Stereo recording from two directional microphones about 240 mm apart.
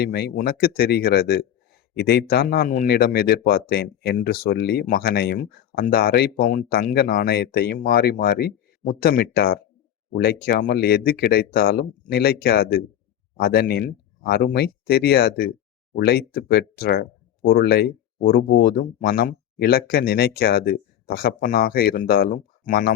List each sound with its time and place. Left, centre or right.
0.0 s speech: left